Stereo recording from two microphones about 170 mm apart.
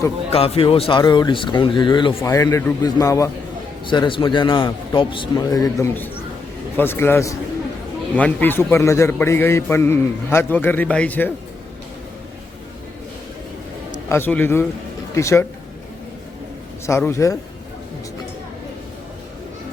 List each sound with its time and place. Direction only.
0.3 s a man's voice: 35° left (ahead or behind); by 11.3 s 10° left (ahead or behind)
14.1 s a man's voice: 10° left (ahead or behind)
16.8 s a man's voice: 15° left (ahead or behind)